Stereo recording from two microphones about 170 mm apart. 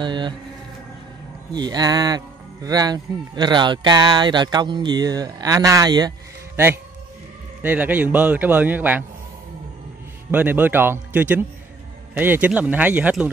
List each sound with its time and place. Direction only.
0.0 s speech: 25° right (ahead or behind)
1.5 s a man's voice: 25° right (ahead or behind)
10.3 s a man's voice: 10° right (ahead or behind)